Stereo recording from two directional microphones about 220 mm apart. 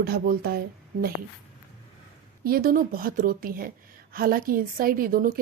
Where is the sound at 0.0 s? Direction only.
45° right (ahead or behind).